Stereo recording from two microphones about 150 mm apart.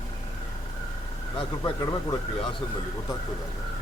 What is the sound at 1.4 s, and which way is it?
Speech, 30° left (ahead or behind).